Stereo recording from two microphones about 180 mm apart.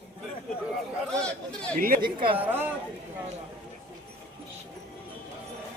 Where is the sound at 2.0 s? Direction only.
30° right (ahead or behind).